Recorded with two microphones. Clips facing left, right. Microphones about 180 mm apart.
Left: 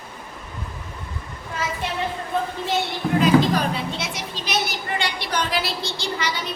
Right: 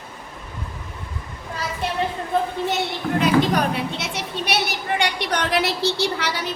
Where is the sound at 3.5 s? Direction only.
65° right (ahead or behind).